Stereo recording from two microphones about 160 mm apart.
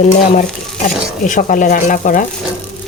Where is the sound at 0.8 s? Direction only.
55° left (ahead or behind).